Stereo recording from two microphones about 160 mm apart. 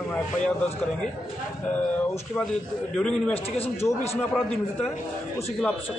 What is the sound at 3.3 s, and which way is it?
Speech, 40° left (ahead or behind).